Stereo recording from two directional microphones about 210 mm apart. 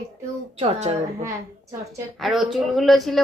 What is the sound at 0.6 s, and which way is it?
Speech, 30° right (ahead or behind).